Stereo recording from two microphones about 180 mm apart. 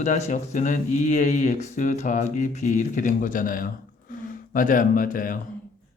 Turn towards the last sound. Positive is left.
turn(degrees=50)  # may be behind; listen again after turning